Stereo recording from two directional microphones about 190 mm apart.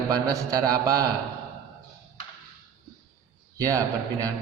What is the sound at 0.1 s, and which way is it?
Mantra, 20° right (ahead or behind).